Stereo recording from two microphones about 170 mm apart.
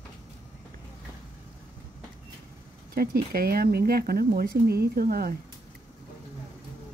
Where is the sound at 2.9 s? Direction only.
60° right (ahead or behind).